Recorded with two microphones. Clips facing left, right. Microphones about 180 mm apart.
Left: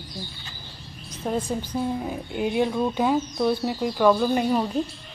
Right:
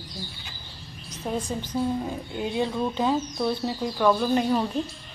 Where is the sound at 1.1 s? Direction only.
10° left (ahead or behind).